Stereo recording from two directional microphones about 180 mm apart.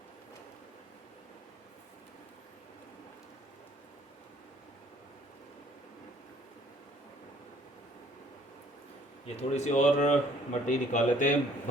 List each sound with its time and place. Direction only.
9.2 s speech: 35° left (ahead or behind)